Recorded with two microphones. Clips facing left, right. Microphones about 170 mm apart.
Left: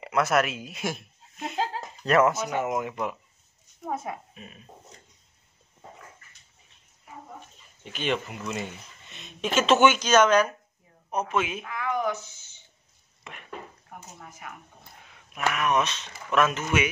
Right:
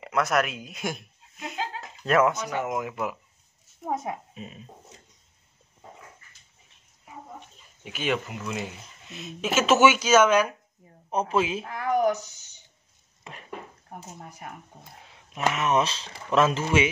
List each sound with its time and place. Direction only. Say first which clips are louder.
0.0 s speech: left 1 dB; centre (ahead or behind)
3.8 s speech: right 2 dB; 20° right (ahead or behind)
7.8 s speech: right 1 dB; 5° right (ahead or behind)
11.1 s speech: right 3 dB; 30° right (ahead or behind)
13.2 s dishes: right 1 dB; 35° right (ahead or behind)
15.3 s speech: right 1 dB; 25° right (ahead or behind)